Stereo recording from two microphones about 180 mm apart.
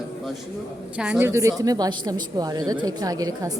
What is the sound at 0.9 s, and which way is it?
A woman's voice, 5° right (ahead or behind).